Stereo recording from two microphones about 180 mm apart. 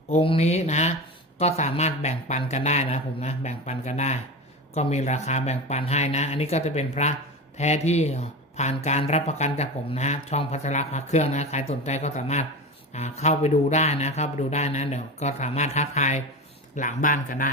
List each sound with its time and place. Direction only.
0.1 s speech: 35° left (ahead or behind)